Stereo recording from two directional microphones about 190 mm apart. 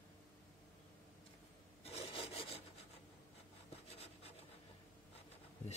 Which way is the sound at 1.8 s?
30° left (ahead or behind).